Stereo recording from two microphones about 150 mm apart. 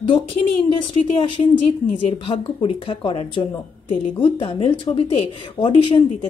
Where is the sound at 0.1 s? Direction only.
40° left (ahead or behind).